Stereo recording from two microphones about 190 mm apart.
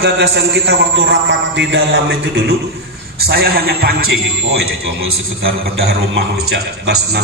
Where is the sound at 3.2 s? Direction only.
55° right (ahead or behind).